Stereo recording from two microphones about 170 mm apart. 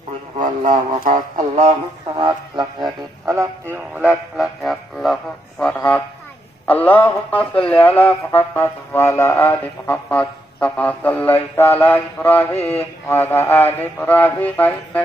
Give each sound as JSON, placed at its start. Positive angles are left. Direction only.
{"t": 0.3, "sound": "speech", "side_deg": -50}
{"t": 2.1, "sound": "speech", "side_deg": -30}
{"t": 3.2, "sound": "music", "side_deg": -15}
{"t": 6.7, "sound": "speech", "side_deg": 10}